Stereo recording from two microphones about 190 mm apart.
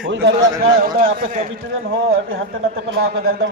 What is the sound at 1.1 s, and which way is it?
Speech, 45° right (ahead or behind).